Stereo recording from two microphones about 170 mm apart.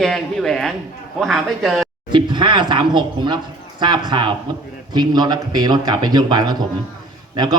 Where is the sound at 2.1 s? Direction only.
25° right (ahead or behind).